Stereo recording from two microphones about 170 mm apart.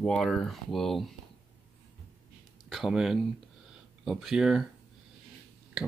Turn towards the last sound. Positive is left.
turn(degrees=-5)  # may be behind; listen again after turning